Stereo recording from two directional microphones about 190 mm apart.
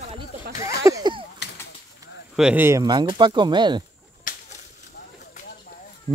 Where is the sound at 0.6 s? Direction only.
15° right (ahead or behind).